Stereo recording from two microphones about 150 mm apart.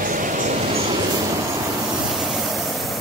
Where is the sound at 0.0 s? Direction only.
60° right (ahead or behind).